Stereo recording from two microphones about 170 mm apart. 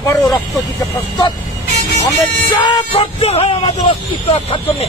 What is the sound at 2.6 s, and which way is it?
Speech, 35° left (ahead or behind).